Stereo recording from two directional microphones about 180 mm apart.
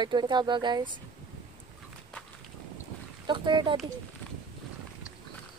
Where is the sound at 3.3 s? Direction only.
25° right (ahead or behind).